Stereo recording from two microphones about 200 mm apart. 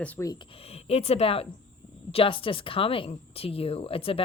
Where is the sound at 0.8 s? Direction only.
30° left (ahead or behind).